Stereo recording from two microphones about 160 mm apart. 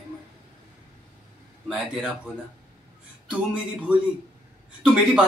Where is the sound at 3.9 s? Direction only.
5° right (ahead or behind).